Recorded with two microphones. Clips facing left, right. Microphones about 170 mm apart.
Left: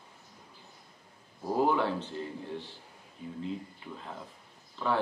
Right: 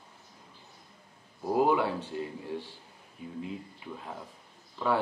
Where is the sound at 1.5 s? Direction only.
10° right (ahead or behind).